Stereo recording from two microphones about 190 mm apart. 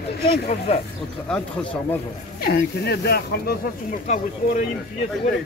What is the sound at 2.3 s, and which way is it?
Speech, 55° left (ahead or behind).